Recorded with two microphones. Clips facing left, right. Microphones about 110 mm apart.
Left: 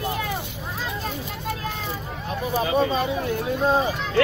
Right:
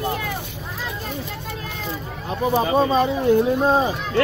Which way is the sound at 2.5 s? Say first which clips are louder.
Right 3 dB; 30° right (ahead or behind).